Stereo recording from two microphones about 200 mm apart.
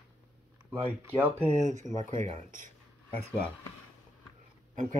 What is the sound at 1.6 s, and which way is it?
Speech, 35° right (ahead or behind).